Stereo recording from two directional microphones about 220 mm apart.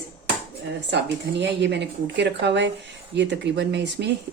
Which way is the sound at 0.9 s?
50° right (ahead or behind).